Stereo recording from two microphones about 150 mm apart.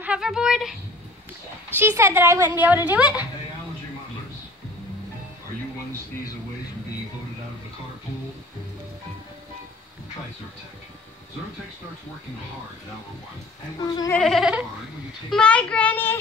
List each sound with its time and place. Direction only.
0.0 s speech: 5° right (ahead or behind)
1.8 s a woman's voice: 15° right (ahead or behind)
13.8 s goat: 25° left (ahead or behind)
14.1 s a child's voice: centre (ahead or behind)